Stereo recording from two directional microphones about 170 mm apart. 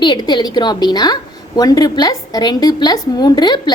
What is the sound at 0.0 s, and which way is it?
A woman's voice, 25° left (ahead or behind).